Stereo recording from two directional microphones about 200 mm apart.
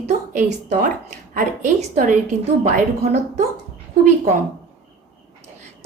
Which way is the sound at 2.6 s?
35° right (ahead or behind).